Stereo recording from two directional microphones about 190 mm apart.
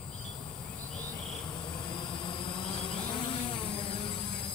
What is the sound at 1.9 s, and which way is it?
Vehicle, 25° left (ahead or behind).